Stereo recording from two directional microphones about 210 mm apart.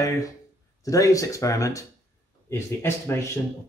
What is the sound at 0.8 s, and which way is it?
Speech, 15° left (ahead or behind).